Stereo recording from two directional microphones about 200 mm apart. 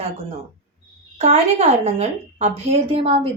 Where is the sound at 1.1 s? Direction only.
35° right (ahead or behind).